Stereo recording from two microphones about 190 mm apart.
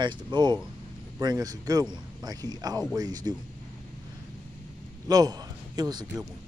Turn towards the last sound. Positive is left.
turn(degrees=-20)  # may be behind; listen again after turning